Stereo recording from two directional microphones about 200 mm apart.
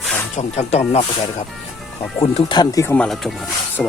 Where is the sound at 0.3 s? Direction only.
30° left (ahead or behind).